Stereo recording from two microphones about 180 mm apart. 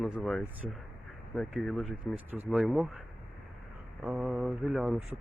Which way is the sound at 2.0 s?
10° right (ahead or behind).